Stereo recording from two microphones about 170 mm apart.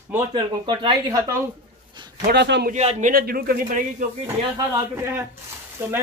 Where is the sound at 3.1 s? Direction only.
60° right (ahead or behind).